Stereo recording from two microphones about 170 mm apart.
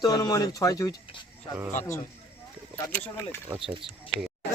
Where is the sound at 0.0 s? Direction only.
20° left (ahead or behind).